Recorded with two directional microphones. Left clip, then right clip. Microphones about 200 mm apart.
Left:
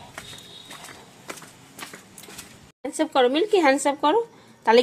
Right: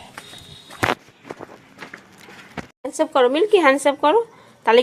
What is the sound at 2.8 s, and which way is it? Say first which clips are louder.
Speech: right 3 dB; 5° right (ahead or behind).